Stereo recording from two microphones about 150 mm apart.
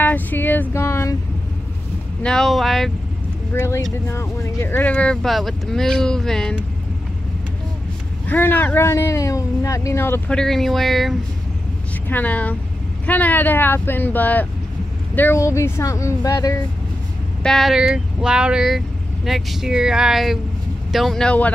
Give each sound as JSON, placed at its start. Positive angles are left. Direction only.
{"t": 0.0, "sound": "a sound", "side_deg": 10}
{"t": 2.2, "sound": "speech", "side_deg": 5}
{"t": 3.5, "sound": "speech", "side_deg": 20}
{"t": 8.3, "sound": "speech", "side_deg": 10}
{"t": 12.1, "sound": "speech", "side_deg": 10}
{"t": 17.4, "sound": "speech", "side_deg": 0}